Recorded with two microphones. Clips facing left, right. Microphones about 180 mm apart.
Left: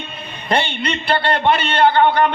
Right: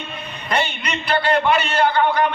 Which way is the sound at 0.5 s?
30° left (ahead or behind).